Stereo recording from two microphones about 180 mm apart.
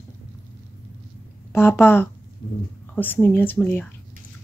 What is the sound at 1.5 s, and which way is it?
Speech, 15° left (ahead or behind).